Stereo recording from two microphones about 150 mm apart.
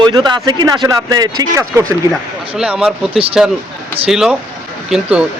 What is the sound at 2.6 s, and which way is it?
Speech, 5° right (ahead or behind).